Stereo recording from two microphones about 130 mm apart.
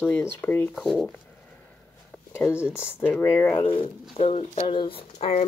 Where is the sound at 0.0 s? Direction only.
10° left (ahead or behind).